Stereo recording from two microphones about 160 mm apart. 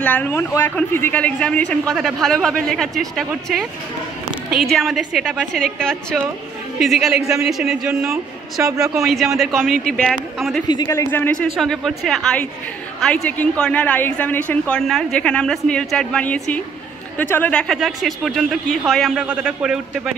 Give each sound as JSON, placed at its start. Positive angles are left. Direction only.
{"t": 0.0, "sound": "speech", "side_deg": 10}
{"t": 4.6, "sound": "speech", "side_deg": 0}
{"t": 8.6, "sound": "speech", "side_deg": -20}
{"t": 9.0, "sound": "speech", "side_deg": 0}
{"t": 10.7, "sound": "speech", "side_deg": 25}
{"t": 11.5, "sound": "speech", "side_deg": 0}